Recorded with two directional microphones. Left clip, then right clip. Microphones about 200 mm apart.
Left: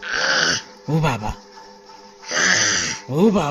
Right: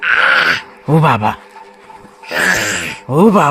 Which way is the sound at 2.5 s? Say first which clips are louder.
Right 2 dB; 25° right (ahead or behind).